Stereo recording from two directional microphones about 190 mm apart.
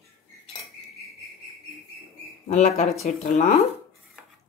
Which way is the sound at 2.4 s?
35° left (ahead or behind).